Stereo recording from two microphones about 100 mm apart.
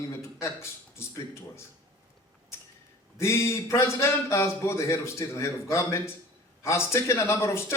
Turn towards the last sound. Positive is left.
turn(degrees=25)  # may be behind; listen again after turning